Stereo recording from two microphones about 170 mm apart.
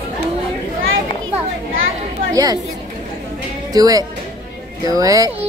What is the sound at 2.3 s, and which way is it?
Speech, 20° right (ahead or behind).